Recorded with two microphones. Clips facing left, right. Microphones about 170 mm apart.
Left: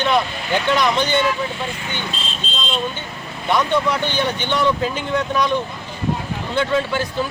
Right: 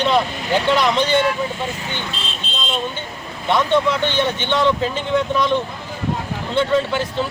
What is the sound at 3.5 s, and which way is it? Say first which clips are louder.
Speech: right 1 dB; 25° right (ahead or behind).